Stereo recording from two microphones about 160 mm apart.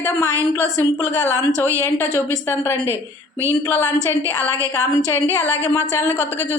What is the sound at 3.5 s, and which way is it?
A woman's voice, 15° left (ahead or behind).